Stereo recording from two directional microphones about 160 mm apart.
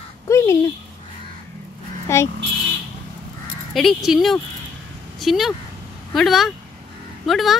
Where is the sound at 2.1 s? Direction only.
15° left (ahead or behind).